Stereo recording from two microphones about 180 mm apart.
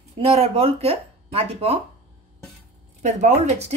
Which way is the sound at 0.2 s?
35° right (ahead or behind).